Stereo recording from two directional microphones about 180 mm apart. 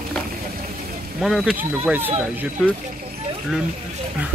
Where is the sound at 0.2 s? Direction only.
Centre (ahead or behind).